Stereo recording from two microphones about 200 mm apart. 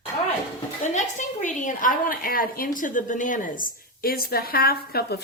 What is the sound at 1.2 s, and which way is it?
A woman's voice, 40° left (ahead or behind).